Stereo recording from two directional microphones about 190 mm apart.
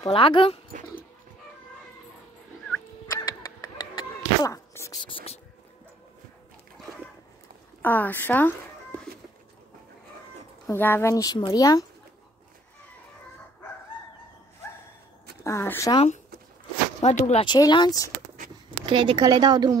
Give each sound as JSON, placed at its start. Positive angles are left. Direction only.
{"t": 0.0, "sound": "speech", "side_deg": 25}
{"t": 3.1, "sound": "dog", "side_deg": 20}
{"t": 5.0, "sound": "speech", "side_deg": 30}
{"t": 7.8, "sound": "speech", "side_deg": 10}
{"t": 10.7, "sound": "speech", "side_deg": 10}
{"t": 15.4, "sound": "speech", "side_deg": 15}
{"t": 15.9, "sound": "speech", "side_deg": 30}
{"t": 17.5, "sound": "speech", "side_deg": 20}
{"t": 18.9, "sound": "speech", "side_deg": -25}